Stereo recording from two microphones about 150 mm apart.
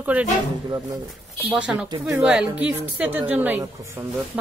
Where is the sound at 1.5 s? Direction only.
5° right (ahead or behind).